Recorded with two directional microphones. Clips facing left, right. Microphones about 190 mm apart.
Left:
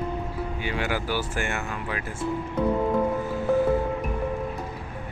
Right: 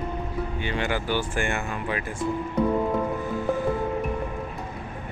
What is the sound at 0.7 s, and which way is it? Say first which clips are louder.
Speech: right 1 dB; 5° left (ahead or behind).